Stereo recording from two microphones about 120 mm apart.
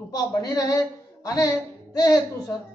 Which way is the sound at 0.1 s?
30° left (ahead or behind).